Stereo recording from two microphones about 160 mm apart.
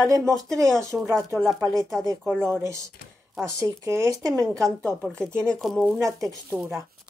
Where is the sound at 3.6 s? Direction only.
20° right (ahead or behind).